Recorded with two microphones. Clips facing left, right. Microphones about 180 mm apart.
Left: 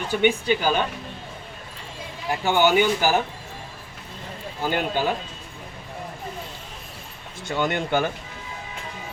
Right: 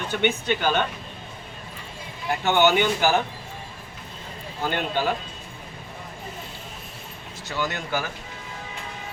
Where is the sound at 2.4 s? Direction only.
10° left (ahead or behind).